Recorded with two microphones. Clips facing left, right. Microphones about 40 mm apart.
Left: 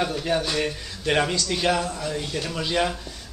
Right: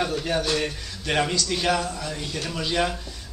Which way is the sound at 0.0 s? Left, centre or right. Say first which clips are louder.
Left 1 dB; centre.